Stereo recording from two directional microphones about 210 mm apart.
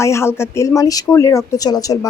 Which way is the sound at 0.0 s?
15° left (ahead or behind).